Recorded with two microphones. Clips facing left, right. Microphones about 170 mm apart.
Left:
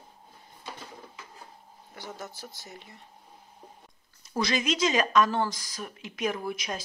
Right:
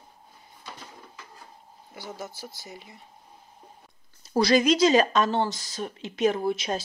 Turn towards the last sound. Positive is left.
turn(degrees=-30)  # may be behind; listen again after turning